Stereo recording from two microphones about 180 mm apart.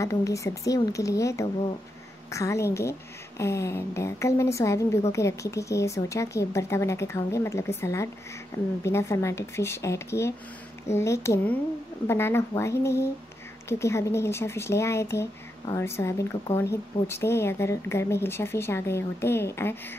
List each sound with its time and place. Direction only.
0.0 s a woman's voice: 15° left (ahead or behind)